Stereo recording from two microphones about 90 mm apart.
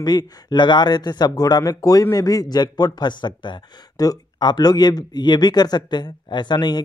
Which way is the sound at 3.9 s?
45° left (ahead or behind).